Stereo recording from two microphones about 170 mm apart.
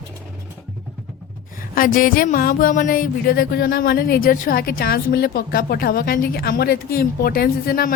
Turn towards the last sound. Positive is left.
turn(degrees=60)  # may be behind; listen again after turning